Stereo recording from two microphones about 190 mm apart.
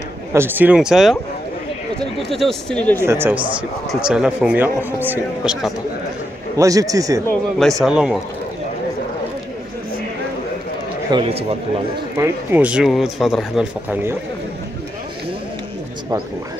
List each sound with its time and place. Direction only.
0.3 s speech: 10° right (ahead or behind); by 3.1 s 10° left (ahead or behind)
3.1 s speech: 10° right (ahead or behind)
6.5 s speech: 15° right (ahead or behind)
7.8 s speech: 5° right (ahead or behind)
11.1 s speech: 25° right (ahead or behind)
12.2 s speech: 10° right (ahead or behind)